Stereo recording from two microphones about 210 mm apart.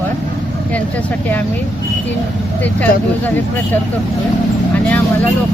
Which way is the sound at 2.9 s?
40° left (ahead or behind).